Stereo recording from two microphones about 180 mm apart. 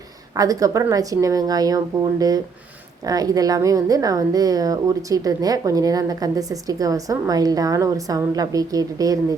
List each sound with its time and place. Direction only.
0.3 s a woman's voice: 20° right (ahead or behind)